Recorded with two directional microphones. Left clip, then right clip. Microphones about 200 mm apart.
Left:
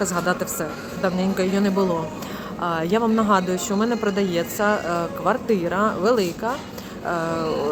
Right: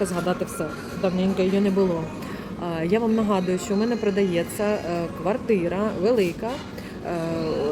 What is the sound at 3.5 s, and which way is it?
Speech, 30° left (ahead or behind).